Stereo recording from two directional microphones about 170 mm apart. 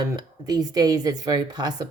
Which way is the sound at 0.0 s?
20° right (ahead or behind).